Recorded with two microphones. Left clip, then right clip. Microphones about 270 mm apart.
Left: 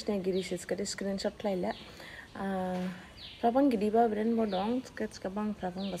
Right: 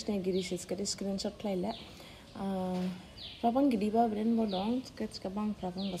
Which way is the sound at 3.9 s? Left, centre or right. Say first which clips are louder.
Left 3 dB; left.